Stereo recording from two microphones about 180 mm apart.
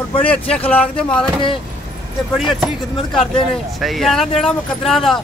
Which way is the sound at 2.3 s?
Centre (ahead or behind).